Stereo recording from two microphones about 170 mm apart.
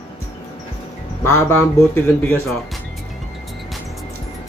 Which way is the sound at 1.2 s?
15° left (ahead or behind).